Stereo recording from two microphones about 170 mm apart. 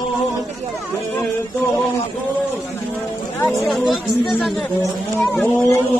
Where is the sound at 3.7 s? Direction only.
Centre (ahead or behind).